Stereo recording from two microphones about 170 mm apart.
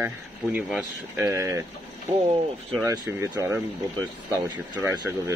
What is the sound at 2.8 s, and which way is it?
Speech, 20° right (ahead or behind).